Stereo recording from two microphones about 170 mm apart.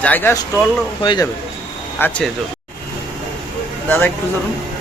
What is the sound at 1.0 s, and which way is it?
Speech, 25° left (ahead or behind).